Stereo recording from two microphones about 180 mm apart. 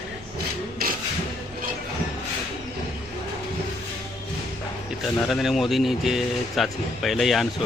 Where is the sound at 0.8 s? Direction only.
55° right (ahead or behind).